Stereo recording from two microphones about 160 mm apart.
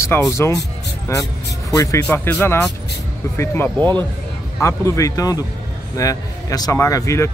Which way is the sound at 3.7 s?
25° right (ahead or behind).